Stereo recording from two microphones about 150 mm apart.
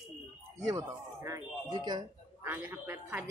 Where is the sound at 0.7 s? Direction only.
20° right (ahead or behind).